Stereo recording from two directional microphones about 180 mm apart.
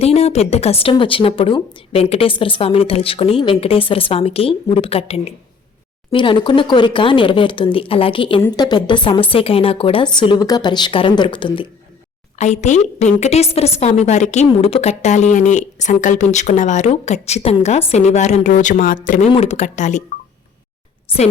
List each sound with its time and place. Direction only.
0.0 s a woman's voice: 35° left (ahead or behind)
12.4 s a woman's voice: 40° left (ahead or behind)
19.3 s a woman's voice: 35° left (ahead or behind)